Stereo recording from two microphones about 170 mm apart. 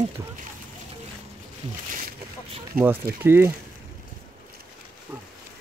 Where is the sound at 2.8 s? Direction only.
60° right (ahead or behind).